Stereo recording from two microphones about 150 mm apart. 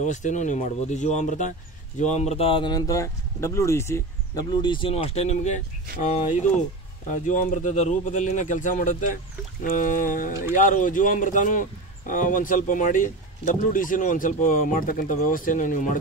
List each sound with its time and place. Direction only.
0.0 s speech: 55° left (ahead or behind)
7.1 s speech: 60° left (ahead or behind)